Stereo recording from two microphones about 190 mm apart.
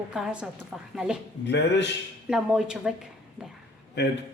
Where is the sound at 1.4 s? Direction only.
65° left (ahead or behind).